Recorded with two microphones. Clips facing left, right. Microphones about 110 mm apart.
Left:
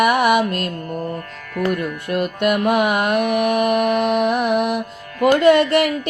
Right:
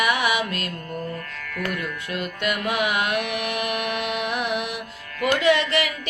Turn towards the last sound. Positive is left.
turn(degrees=55)  # may be behind; listen again after turning